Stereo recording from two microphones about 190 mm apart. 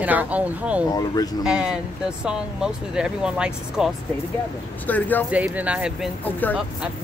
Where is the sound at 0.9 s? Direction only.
20° left (ahead or behind).